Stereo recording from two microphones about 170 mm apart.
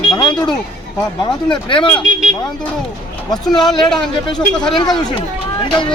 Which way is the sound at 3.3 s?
25° left (ahead or behind).